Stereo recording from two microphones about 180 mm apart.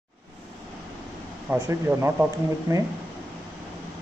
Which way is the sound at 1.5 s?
15° right (ahead or behind).